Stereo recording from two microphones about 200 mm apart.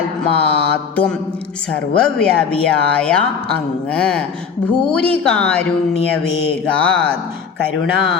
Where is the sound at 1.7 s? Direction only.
5° left (ahead or behind).